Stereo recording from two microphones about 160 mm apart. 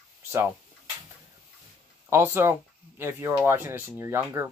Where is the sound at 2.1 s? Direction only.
15° right (ahead or behind).